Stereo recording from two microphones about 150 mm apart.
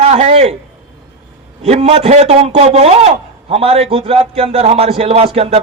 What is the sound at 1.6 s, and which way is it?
A man's voice, 45° right (ahead or behind).